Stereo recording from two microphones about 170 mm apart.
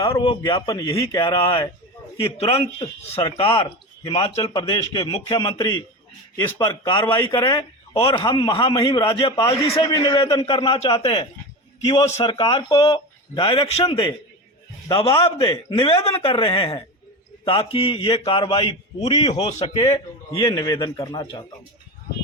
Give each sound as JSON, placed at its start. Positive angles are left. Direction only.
{"t": 0.2, "sound": "a man's voice", "side_deg": 30}
{"t": 8.0, "sound": "a man's voice", "side_deg": 30}
{"t": 9.8, "sound": "a man's voice", "side_deg": 25}